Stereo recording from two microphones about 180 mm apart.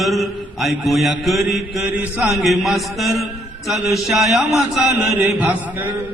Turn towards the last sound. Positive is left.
turn(degrees=-10)  # may be behind; listen again after turning